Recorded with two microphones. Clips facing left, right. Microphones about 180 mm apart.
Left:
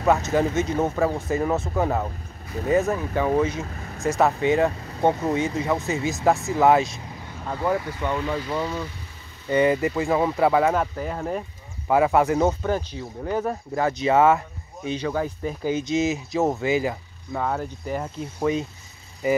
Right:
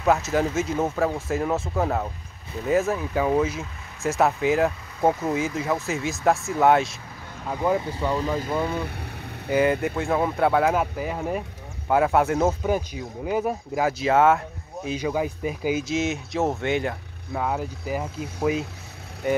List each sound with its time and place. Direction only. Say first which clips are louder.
0.0 s speech: left 1 dB; centre (ahead or behind)
7.4 s speech: right 1 dB; 15° right (ahead or behind)
8.1 s speech: right 1 dB; 40° right (ahead or behind)
8.6 s speech: right 2 dB; 60° right (ahead or behind)
9.5 s speech: left 1 dB; centre (ahead or behind)